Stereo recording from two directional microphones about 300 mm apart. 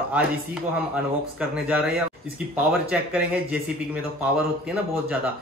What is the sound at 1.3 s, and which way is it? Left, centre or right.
Speech, centre.